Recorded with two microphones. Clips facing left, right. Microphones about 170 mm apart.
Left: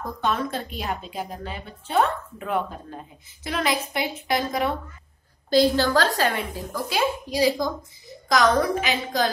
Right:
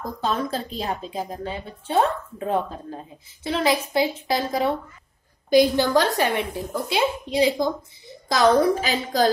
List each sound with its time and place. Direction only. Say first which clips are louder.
0.2 s a woman's voice: right 1 dB; 30° right (ahead or behind)
5.5 s a woman's voice: right 2 dB; 20° right (ahead or behind); by 9.3 s 35° right (ahead or behind)